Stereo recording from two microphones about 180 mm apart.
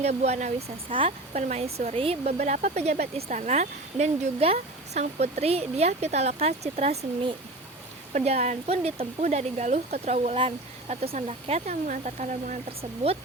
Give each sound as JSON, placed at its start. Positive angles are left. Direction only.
{"t": 0.0, "sound": "speech", "side_deg": -35}
{"t": 0.9, "sound": "speech", "side_deg": -30}